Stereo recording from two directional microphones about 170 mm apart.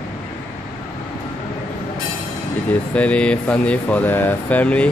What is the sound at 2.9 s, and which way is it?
Speech, 5° left (ahead or behind).